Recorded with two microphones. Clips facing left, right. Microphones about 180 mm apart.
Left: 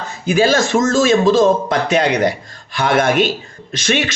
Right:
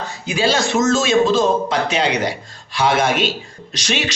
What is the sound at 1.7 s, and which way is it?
Speech, 50° left (ahead or behind).